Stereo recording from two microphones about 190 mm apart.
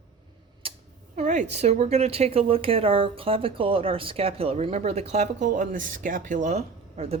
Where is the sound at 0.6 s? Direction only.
30° right (ahead or behind).